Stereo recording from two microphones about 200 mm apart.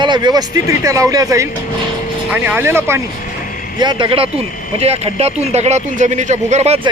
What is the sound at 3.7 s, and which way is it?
Speech, 25° right (ahead or behind).